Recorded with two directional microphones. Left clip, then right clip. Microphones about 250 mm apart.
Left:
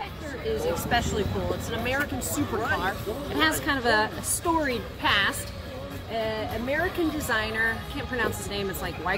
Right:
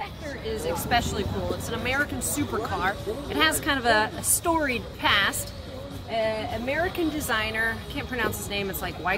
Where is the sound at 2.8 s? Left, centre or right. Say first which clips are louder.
Right 2 dB; centre.